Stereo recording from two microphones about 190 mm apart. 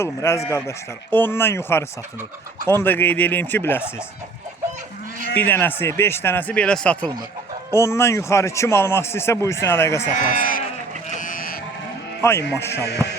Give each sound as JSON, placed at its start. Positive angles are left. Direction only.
{"t": 0.0, "sound": "a man's voice", "side_deg": 15}
{"t": 5.4, "sound": "a man's voice", "side_deg": 10}
{"t": 10.2, "sound": "speech", "side_deg": 45}
{"t": 11.2, "sound": "vehicle", "side_deg": 45}
{"t": 12.2, "sound": "a man's voice", "side_deg": 15}